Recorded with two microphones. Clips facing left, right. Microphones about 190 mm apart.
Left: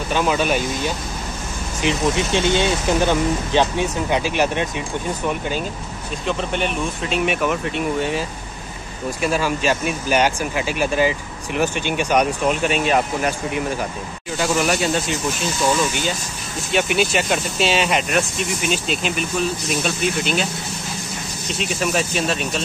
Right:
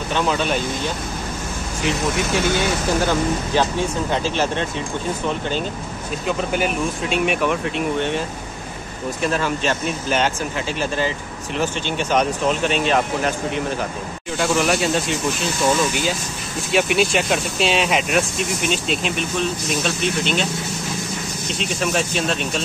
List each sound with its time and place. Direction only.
0.1 s speech: 10° left (ahead or behind)
1.8 s speech: 20° left (ahead or behind)
6.2 s speech: 5° right (ahead or behind)
14.4 s speech: centre (ahead or behind)
21.5 s speech: centre (ahead or behind)